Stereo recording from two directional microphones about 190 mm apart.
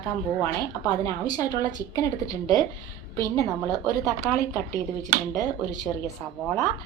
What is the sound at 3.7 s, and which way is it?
Speech, 20° right (ahead or behind).